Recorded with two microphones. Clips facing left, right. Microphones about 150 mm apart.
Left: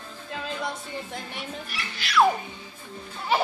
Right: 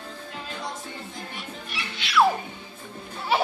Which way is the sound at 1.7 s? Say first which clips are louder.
Right 2 dB; centre (ahead or behind).